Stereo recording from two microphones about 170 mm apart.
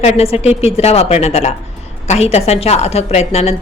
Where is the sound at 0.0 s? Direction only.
35° left (ahead or behind).